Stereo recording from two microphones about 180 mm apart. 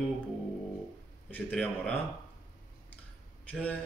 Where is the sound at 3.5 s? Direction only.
5° left (ahead or behind).